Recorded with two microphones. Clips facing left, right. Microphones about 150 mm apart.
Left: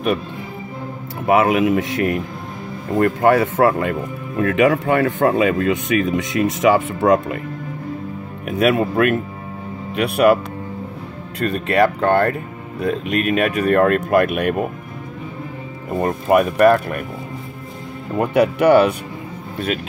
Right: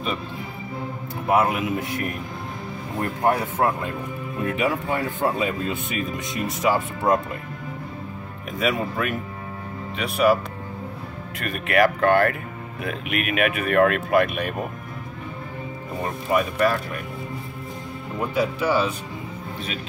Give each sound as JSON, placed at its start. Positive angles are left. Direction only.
{"t": 1.2, "sound": "speech", "side_deg": 85}
{"t": 8.5, "sound": "speech", "side_deg": 65}
{"t": 11.3, "sound": "speech", "side_deg": 30}
{"t": 14.2, "sound": "speech", "side_deg": 55}
{"t": 16.0, "sound": "speech", "side_deg": 55}
{"t": 18.1, "sound": "speech", "side_deg": 70}